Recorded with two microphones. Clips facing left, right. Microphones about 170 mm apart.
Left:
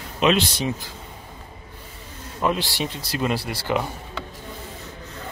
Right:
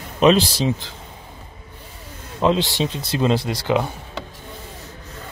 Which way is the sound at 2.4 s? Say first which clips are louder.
Right 5 dB; 20° right (ahead or behind).